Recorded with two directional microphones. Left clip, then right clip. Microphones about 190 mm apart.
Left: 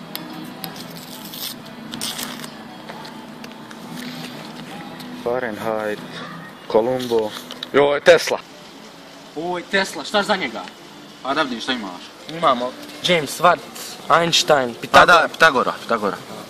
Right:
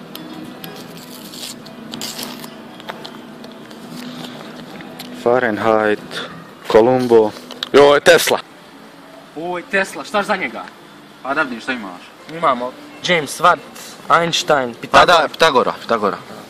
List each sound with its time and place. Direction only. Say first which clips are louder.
1.9 s a sound: even; 5° right (ahead or behind)
5.2 s speech: right 8 dB; 50° right (ahead or behind)
9.5 s a man's voice: right 2 dB; centre (ahead or behind)
15.0 s a man's voice: right 1 dB; 35° right (ahead or behind)